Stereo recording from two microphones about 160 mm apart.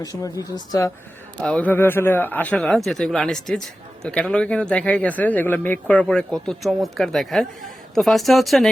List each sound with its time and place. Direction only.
0.2 s a woman's voice: 25° left (ahead or behind)
1.4 s speech: 5° left (ahead or behind)